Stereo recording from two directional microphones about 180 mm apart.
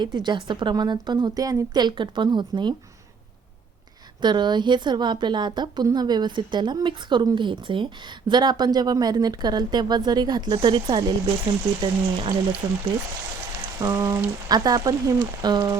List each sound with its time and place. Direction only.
0.0 s a woman's voice: 25° right (ahead or behind)
4.2 s a woman's voice: 25° right (ahead or behind)